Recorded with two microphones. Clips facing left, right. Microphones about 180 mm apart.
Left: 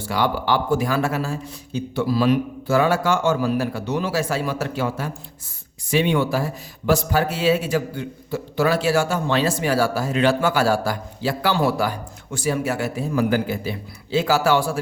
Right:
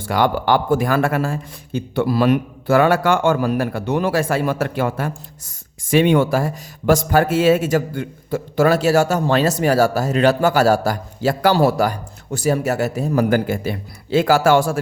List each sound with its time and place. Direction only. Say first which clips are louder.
0.0 s speech: right 4 dB; 50° right (ahead or behind)